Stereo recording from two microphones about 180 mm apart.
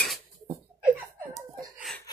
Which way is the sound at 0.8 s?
10° right (ahead or behind).